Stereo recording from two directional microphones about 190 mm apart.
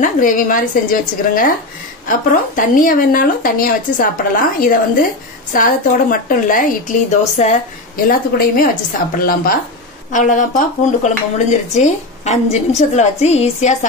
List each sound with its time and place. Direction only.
0.0 s speech: 45° left (ahead or behind)
8.1 s speech: 50° left (ahead or behind)